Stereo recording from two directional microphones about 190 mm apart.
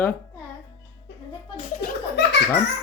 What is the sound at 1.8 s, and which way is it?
Speech, 65° left (ahead or behind).